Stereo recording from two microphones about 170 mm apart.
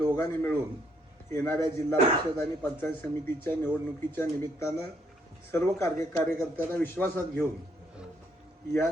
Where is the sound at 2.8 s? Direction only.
10° left (ahead or behind).